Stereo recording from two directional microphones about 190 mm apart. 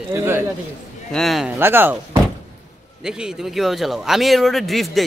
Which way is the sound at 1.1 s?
Centre (ahead or behind).